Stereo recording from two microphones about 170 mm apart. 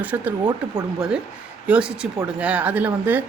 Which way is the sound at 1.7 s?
5° right (ahead or behind).